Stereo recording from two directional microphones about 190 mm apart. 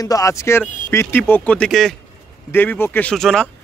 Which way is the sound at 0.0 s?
20° left (ahead or behind).